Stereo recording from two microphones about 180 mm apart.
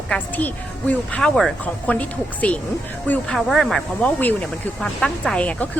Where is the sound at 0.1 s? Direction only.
10° left (ahead or behind).